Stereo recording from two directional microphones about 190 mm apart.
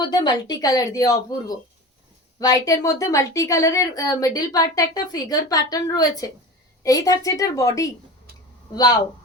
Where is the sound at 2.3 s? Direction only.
20° left (ahead or behind).